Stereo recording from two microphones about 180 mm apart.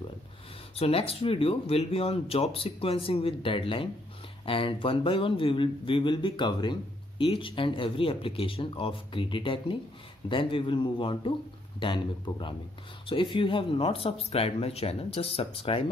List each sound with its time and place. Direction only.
0.7 s a man's voice: 35° left (ahead or behind)